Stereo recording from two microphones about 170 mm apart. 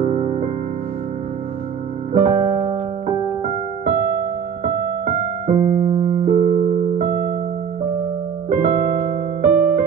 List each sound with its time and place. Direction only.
0.0 s music: 40° right (ahead or behind)
2.1 s keyboard: 40° right (ahead or behind)
5.0 s electric piano: 40° right (ahead or behind)
7.0 s music: 45° right (ahead or behind)
8.5 s electric piano: 50° right (ahead or behind)